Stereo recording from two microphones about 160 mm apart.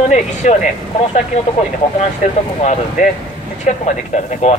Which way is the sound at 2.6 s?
45° left (ahead or behind).